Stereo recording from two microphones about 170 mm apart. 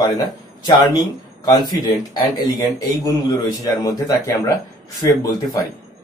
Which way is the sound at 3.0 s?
20° left (ahead or behind).